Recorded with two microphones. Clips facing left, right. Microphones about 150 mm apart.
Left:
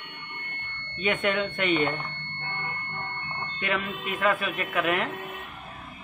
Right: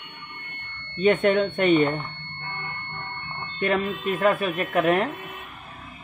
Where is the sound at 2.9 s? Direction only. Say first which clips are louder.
Even; 45° left (ahead or behind).